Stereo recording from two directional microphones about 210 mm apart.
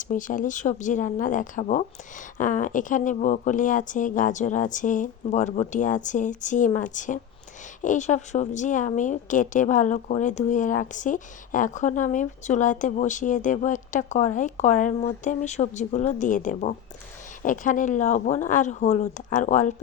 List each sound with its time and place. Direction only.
0.0 s speech: 40° left (ahead or behind)